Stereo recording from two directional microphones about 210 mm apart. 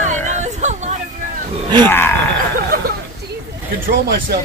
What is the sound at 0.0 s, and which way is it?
Hubbub, 35° right (ahead or behind).